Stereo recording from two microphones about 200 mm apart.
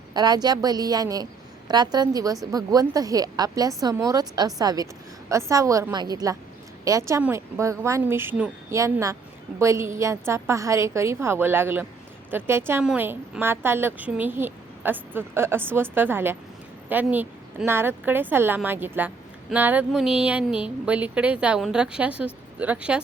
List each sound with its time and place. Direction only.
0.1 s a woman's voice: 20° right (ahead or behind)